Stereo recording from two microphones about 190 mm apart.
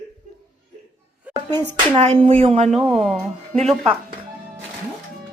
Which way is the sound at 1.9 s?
30° right (ahead or behind).